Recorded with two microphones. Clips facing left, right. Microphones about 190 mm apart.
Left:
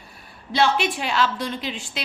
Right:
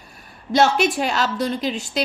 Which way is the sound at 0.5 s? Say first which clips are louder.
Right 4 dB; 45° right (ahead or behind).